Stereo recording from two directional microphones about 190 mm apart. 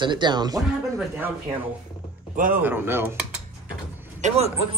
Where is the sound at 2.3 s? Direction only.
45° right (ahead or behind).